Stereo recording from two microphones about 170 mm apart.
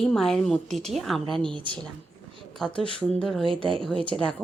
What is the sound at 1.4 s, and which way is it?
Speech, 30° right (ahead or behind).